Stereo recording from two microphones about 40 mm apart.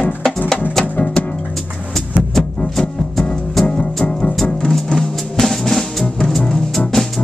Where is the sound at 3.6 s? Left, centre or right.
Centre.